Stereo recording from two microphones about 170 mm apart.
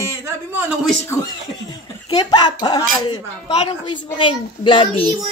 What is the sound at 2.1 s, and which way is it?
A woman's voice, 25° left (ahead or behind).